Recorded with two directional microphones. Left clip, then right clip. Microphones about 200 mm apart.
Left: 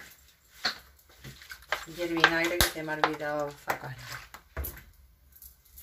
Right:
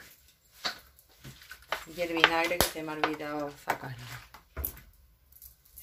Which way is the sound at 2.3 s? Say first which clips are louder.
Left 1 dB; 50° right (ahead or behind).